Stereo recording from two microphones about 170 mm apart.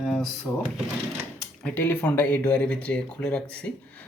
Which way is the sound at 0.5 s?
15° left (ahead or behind).